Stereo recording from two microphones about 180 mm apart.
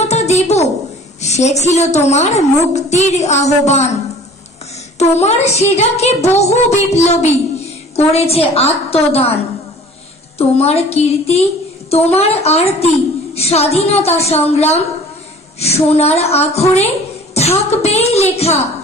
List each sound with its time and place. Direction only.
0.0 s a sound: 40° left (ahead or behind)
1.2 s child singing: 40° left (ahead or behind)
4.9 s child singing: 40° left (ahead or behind)
16.7 s a woman's voice: 35° left (ahead or behind)